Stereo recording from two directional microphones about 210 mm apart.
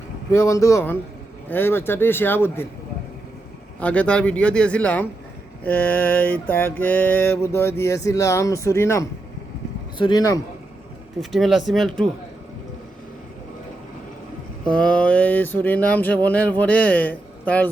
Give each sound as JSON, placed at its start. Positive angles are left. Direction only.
{"t": 0.3, "sound": "mantra", "side_deg": 15}
{"t": 3.8, "sound": "speech", "side_deg": 5}
{"t": 5.6, "sound": "mantra", "side_deg": 10}
{"t": 11.2, "sound": "speech", "side_deg": 0}
{"t": 14.6, "sound": "mantra", "side_deg": 5}